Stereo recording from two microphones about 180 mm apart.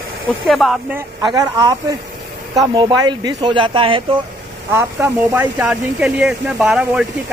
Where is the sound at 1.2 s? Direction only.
25° right (ahead or behind).